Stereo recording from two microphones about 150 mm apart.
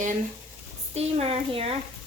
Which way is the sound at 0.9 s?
45° right (ahead or behind).